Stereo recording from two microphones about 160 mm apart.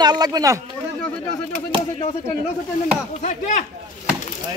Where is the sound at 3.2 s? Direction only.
45° left (ahead or behind).